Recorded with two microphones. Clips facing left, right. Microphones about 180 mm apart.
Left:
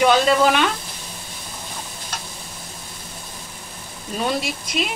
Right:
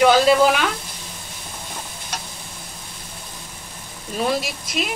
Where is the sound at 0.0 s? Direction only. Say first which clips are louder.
Right 2 dB; 5° right (ahead or behind).